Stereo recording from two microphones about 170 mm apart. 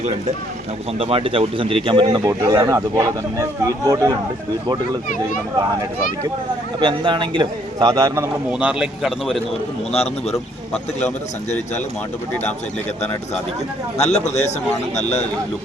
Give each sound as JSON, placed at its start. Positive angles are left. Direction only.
{"t": 0.9, "sound": "a man's voice", "side_deg": -35}
{"t": 6.7, "sound": "a man's voice", "side_deg": -25}
{"t": 8.5, "sound": "a man's voice", "side_deg": -5}
{"t": 9.9, "sound": "speech", "side_deg": 40}
{"t": 14.0, "sound": "speech", "side_deg": 40}